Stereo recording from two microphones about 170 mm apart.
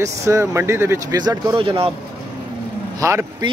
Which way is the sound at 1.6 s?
30° right (ahead or behind).